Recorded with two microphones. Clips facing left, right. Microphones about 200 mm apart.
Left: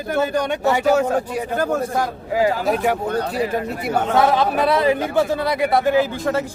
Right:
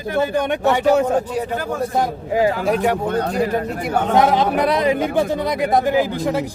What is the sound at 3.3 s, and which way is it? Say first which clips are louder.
Speech: right 2 dB; 45° right (ahead or behind).